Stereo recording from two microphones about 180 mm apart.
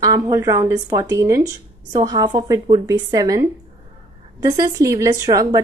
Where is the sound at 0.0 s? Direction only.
20° right (ahead or behind).